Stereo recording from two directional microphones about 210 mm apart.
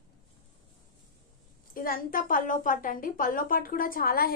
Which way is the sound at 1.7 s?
45° left (ahead or behind).